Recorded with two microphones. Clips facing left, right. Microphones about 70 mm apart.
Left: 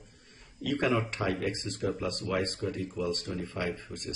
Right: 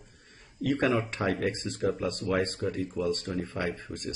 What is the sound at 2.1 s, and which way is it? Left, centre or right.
Speech, right.